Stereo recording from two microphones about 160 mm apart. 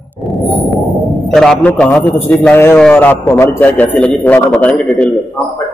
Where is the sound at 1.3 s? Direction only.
5° left (ahead or behind).